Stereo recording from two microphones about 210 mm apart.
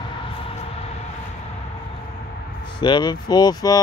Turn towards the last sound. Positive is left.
turn(degrees=20)  # may be behind; listen again after turning